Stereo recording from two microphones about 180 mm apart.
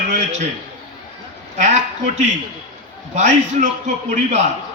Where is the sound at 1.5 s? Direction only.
40° right (ahead or behind).